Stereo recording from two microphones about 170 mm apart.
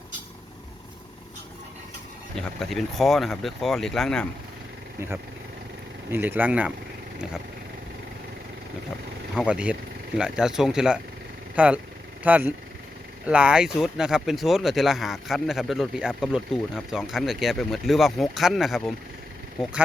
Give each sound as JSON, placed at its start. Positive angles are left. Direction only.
{"t": 2.3, "sound": "speech", "side_deg": 0}
{"t": 4.9, "sound": "speech", "side_deg": -15}
{"t": 9.3, "sound": "speech", "side_deg": -5}